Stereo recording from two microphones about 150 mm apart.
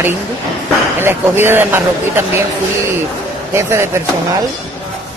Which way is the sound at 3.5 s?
15° right (ahead or behind).